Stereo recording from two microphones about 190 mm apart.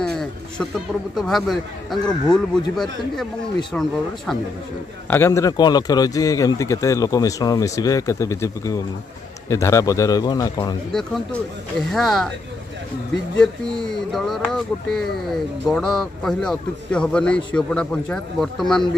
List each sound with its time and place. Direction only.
0.0 s a sound: 5° left (ahead or behind)
1.1 s a man's voice: centre (ahead or behind)
5.1 s a man's voice: 15° left (ahead or behind)
10.9 s speech: 5° left (ahead or behind)
13.4 s speech: centre (ahead or behind)